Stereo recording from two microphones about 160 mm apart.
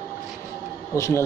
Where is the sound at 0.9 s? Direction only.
20° left (ahead or behind).